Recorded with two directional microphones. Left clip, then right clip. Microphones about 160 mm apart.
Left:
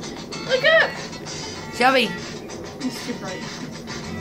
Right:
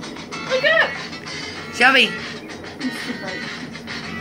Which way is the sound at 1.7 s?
15° left (ahead or behind).